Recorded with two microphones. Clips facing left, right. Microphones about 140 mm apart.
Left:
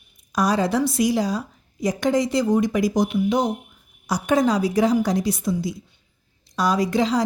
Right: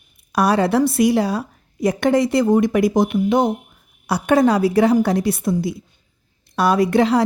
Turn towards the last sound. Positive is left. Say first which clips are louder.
# right 5 dB
turn(degrees=-60)  # may be behind; listen again after turning